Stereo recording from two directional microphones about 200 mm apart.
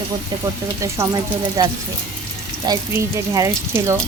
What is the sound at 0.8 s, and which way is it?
Speech, 15° right (ahead or behind).